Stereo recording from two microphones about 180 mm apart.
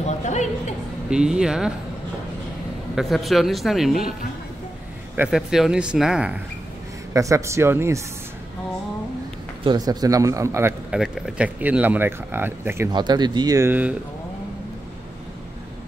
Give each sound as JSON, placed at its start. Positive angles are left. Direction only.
{"t": 0.0, "sound": "a sound", "side_deg": 40}
{"t": 1.1, "sound": "speech", "side_deg": -5}
{"t": 3.0, "sound": "speech", "side_deg": 0}
{"t": 5.1, "sound": "speech", "side_deg": -5}
{"t": 7.2, "sound": "speech", "side_deg": -15}
{"t": 9.6, "sound": "a man's voice", "side_deg": -25}
{"t": 10.9, "sound": "speech", "side_deg": 0}
{"t": 12.9, "sound": "a man's voice", "side_deg": -25}